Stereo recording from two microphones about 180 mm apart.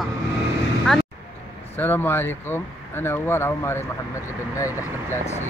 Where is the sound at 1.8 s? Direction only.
10° left (ahead or behind).